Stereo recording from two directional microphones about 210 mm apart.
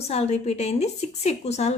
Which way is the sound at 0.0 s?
30° left (ahead or behind).